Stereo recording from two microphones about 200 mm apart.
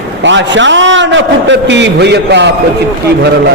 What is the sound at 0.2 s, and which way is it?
A man's voice, 65° right (ahead or behind).